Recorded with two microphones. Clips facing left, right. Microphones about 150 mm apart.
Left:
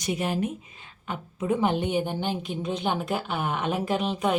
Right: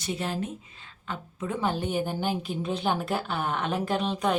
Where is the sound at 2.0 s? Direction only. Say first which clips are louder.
Left 1 dB; 5° right (ahead or behind).